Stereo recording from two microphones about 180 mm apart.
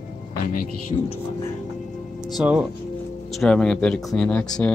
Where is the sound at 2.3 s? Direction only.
5° right (ahead or behind).